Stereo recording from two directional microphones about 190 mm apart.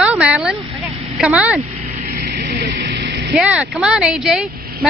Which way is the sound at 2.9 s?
60° right (ahead or behind).